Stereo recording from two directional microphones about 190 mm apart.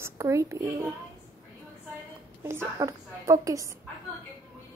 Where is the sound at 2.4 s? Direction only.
15° right (ahead or behind).